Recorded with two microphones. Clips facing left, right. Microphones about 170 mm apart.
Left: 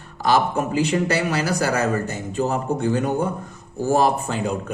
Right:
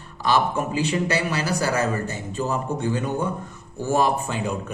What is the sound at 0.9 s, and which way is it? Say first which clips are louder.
A man's voice: left 3 dB; 45° left (ahead or behind).